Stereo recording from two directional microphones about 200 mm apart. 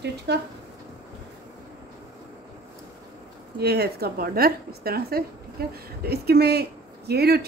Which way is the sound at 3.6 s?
55° right (ahead or behind).